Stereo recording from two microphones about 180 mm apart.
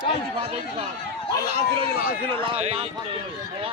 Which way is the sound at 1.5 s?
30° right (ahead or behind).